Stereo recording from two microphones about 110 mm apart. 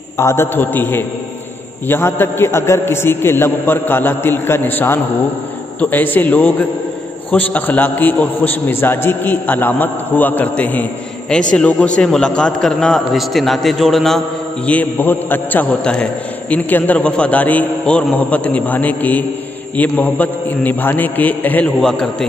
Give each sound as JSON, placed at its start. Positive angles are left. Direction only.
{"t": 0.2, "sound": "a man's voice", "side_deg": 25}
{"t": 14.7, "sound": "a man's voice", "side_deg": 15}